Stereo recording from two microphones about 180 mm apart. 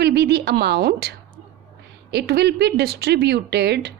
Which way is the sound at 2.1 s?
65° right (ahead or behind).